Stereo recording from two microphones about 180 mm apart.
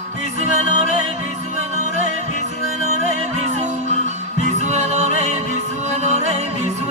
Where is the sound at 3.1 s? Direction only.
40° right (ahead or behind).